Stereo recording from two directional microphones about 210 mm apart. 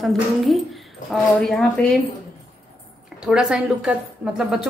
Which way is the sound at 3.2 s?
5° right (ahead or behind).